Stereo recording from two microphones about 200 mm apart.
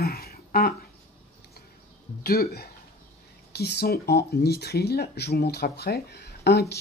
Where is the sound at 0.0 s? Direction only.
50° left (ahead or behind).